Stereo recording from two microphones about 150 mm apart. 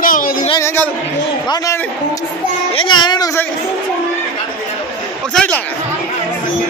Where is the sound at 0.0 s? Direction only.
65° left (ahead or behind).